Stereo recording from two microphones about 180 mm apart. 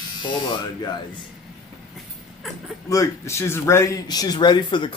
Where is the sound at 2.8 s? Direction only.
15° left (ahead or behind).